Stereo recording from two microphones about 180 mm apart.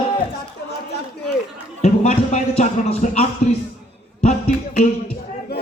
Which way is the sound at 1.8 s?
35° left (ahead or behind).